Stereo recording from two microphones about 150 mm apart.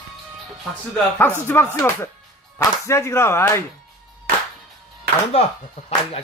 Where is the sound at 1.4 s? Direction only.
15° left (ahead or behind).